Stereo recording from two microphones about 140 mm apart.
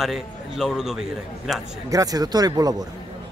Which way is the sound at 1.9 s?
25° right (ahead or behind).